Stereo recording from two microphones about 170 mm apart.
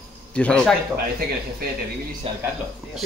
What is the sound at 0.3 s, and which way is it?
Speech, 5° left (ahead or behind).